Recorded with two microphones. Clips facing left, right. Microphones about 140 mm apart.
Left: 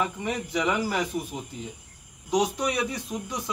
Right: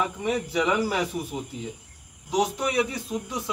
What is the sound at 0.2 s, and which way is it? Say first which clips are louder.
Speech: right 3 dB; 5° right (ahead or behind).